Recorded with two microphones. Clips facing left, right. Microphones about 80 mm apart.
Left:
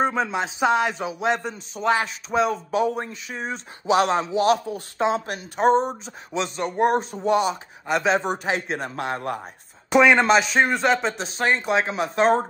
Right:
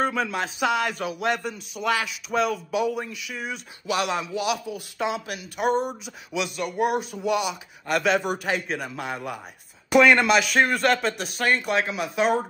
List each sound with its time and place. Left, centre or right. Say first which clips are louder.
0.0 s speech: left 2 dB; left
0.8 s a man's voice: left 2 dB; centre
1.3 s speech: left 2 dB; left
8.9 s a man's voice: left 4 dB; left
10.1 s speech: left 2 dB; left
10.5 s a man's voice: left 1 dB; centre
11.1 s speech: left 1 dB; left